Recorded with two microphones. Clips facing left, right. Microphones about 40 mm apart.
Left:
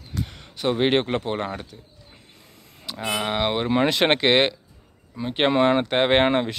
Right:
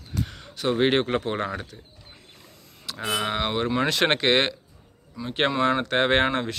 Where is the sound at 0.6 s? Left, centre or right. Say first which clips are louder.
Left 1 dB; centre.